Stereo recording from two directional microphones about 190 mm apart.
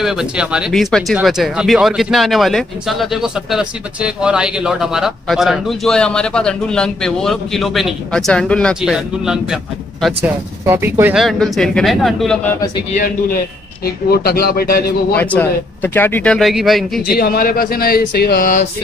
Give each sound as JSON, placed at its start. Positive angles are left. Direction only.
{"t": 0.0, "sound": "speech", "side_deg": -5}
{"t": 10.6, "sound": "speech", "side_deg": -10}
{"t": 11.2, "sound": "speech", "side_deg": 0}
{"t": 12.9, "sound": "speech", "side_deg": 45}
{"t": 15.1, "sound": "speech", "side_deg": 10}
{"t": 17.1, "sound": "speech", "side_deg": 50}